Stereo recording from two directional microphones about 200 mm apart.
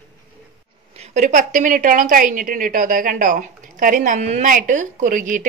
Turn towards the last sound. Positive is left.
turn(degrees=-40)  # may be behind; listen again after turning